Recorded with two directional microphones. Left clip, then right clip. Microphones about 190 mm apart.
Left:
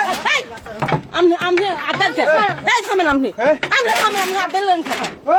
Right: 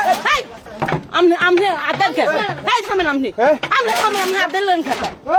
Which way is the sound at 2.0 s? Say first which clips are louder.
Left 2 dB; 35° right (ahead or behind).